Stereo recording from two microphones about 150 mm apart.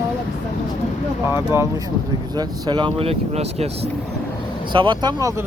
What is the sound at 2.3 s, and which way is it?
Speech, 30° right (ahead or behind).